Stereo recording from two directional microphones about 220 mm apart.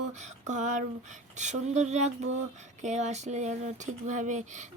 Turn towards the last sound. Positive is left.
turn(degrees=-35)  # may be behind; listen again after turning